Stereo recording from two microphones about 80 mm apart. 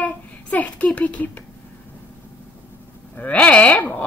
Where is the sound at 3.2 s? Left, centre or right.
Centre.